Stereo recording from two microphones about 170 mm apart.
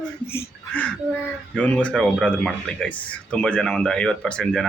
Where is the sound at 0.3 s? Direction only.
10° left (ahead or behind).